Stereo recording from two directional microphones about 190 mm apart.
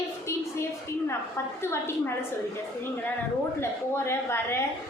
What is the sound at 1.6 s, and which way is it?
Speech, 15° left (ahead or behind).